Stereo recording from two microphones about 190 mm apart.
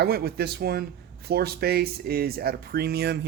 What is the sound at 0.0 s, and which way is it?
Speech, 55° right (ahead or behind).